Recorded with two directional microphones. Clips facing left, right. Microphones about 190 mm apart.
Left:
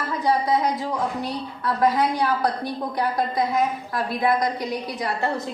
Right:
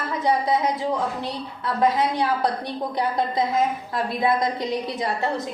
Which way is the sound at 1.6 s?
25° right (ahead or behind).